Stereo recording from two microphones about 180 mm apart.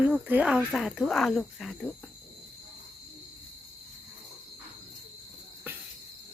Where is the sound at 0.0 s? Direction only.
5° right (ahead or behind).